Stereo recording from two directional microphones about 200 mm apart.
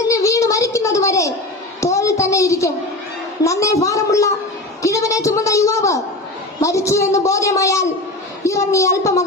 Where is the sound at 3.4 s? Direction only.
15° left (ahead or behind).